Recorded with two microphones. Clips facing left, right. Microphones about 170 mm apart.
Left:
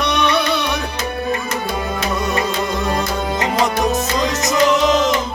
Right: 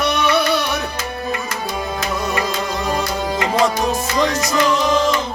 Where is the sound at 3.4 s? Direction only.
20° left (ahead or behind).